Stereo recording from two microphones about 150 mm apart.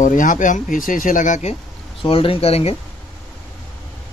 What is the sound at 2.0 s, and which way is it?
Speech, 35° left (ahead or behind).